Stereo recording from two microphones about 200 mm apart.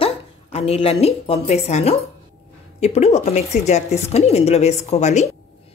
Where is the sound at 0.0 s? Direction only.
30° left (ahead or behind).